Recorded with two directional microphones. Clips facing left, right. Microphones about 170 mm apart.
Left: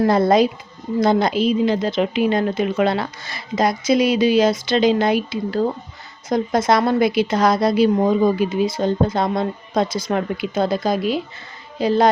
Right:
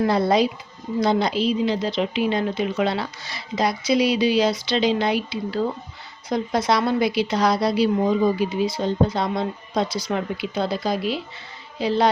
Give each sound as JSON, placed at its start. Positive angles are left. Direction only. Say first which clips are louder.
{"t": 0.0, "sound": "a woman's voice", "louder": "left 4 dB", "side_deg": 45}